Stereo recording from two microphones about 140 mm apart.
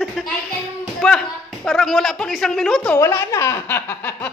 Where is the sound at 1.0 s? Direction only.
5° left (ahead or behind).